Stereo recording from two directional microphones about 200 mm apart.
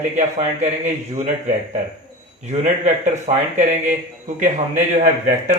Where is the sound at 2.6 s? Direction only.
35° right (ahead or behind).